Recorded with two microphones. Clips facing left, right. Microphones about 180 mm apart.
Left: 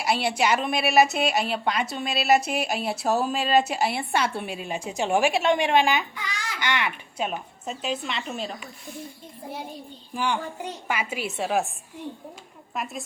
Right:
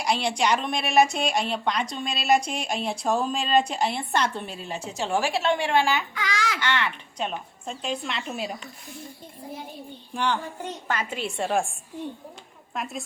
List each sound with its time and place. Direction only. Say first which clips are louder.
0.0 s a woman's voice: left 1 dB; 5° left (ahead or behind)
6.1 s babbling: right 6 dB; 90° right
6.6 s a woman's voice: even; 15° left (ahead or behind); by 8.5 s 5° right (ahead or behind)
10.2 s a woman's voice: even; 10° left (ahead or behind)
12.7 s a woman's voice: even; centre (ahead or behind)